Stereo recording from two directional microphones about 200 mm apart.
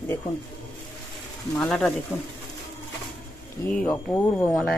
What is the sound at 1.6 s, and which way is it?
Speech, 5° left (ahead or behind).